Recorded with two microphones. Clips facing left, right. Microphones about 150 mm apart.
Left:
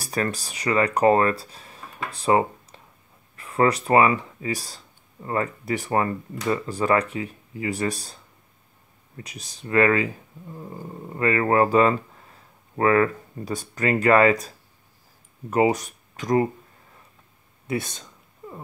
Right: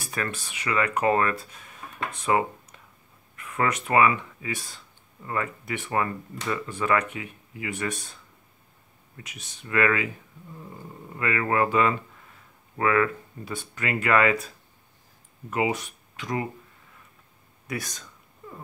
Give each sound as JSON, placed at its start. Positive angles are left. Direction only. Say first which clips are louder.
{"t": 0.0, "sound": "speech", "louder": "left 5 dB", "side_deg": 35}
{"t": 15.5, "sound": "speech", "louder": "left 6 dB", "side_deg": 40}
{"t": 17.6, "sound": "speech", "louder": "left 6 dB", "side_deg": 25}